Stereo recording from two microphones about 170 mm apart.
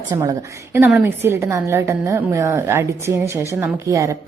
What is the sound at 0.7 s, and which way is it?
A woman's voice, 10° right (ahead or behind).